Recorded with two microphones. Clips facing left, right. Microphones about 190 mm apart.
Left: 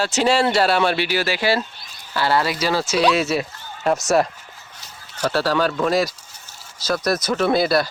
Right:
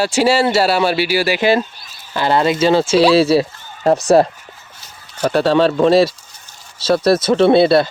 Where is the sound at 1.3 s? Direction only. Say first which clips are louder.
Right 6 dB; 20° right (ahead or behind).